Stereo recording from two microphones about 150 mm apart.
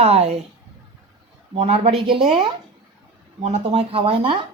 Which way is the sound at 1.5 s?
45° right (ahead or behind).